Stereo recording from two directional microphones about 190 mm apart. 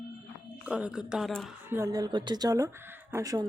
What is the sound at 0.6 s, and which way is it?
Speech, 5° right (ahead or behind).